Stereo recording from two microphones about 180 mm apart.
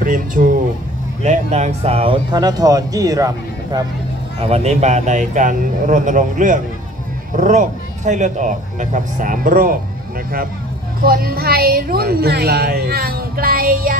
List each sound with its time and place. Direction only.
0.0 s speech: 50° right (ahead or behind); by 2.1 s 35° right (ahead or behind)
2.3 s speech: 20° right (ahead or behind)
4.4 s speech: 35° right (ahead or behind); by 9.8 s 50° right (ahead or behind)
11.1 s a woman's voice: 55° right (ahead or behind)